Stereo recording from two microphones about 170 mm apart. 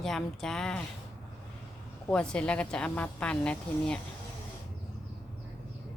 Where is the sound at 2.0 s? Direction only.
5° left (ahead or behind).